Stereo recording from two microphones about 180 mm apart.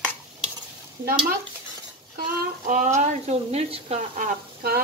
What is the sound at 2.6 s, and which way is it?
Speech, 45° right (ahead or behind).